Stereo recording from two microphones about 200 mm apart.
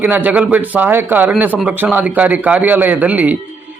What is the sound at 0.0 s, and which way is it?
Speech, 10° right (ahead or behind).